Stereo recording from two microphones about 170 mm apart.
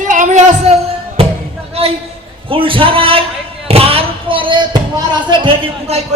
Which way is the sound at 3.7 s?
35° right (ahead or behind).